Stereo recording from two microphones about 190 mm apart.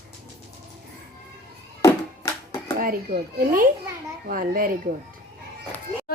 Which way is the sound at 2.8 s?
50° right (ahead or behind).